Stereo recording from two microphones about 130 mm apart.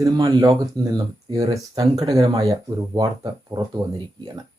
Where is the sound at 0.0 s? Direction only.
25° right (ahead or behind).